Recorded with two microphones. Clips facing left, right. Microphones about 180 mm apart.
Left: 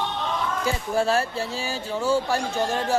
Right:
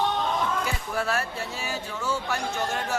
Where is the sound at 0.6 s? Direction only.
30° left (ahead or behind).